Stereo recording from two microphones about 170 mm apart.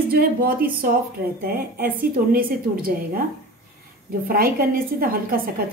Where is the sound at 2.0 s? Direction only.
60° right (ahead or behind).